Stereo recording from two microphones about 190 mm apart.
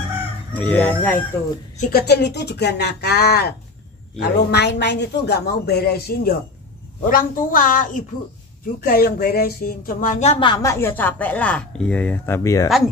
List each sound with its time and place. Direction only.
0.5 s speech: 5° left (ahead or behind)
1.8 s a woman's voice: 55° left (ahead or behind); by 12.6 s 15° left (ahead or behind)